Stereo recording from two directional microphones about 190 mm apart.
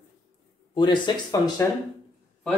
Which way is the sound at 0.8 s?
20° left (ahead or behind).